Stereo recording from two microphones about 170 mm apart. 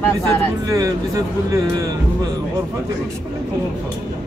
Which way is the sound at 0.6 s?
20° right (ahead or behind).